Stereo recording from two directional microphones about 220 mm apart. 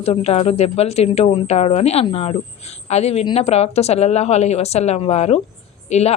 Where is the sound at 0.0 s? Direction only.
30° left (ahead or behind).